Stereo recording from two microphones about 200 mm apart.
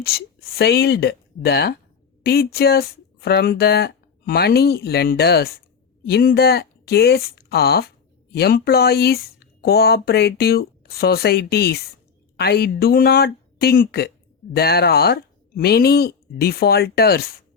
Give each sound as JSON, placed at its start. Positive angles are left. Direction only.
{"t": 0.0, "sound": "speech", "side_deg": 50}